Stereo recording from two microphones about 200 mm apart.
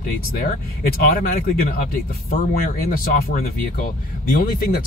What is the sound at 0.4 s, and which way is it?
Speech, 45° left (ahead or behind).